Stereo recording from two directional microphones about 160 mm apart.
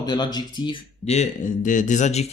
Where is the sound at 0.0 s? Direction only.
25° left (ahead or behind).